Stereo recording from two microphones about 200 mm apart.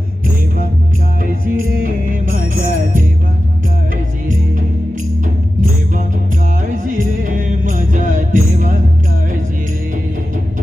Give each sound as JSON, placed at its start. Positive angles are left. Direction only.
{"t": 1.2, "sound": "music", "side_deg": -45}
{"t": 6.7, "sound": "music", "side_deg": -40}